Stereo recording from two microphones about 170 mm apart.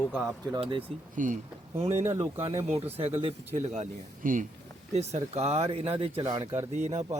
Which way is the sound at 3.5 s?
45° right (ahead or behind).